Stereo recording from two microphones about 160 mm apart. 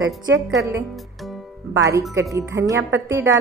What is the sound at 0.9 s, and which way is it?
Music, centre (ahead or behind).